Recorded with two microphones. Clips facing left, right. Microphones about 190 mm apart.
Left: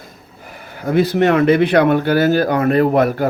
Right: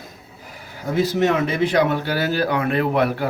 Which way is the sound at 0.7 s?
60° left (ahead or behind).